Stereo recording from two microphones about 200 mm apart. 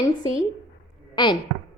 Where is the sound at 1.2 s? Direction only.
25° left (ahead or behind).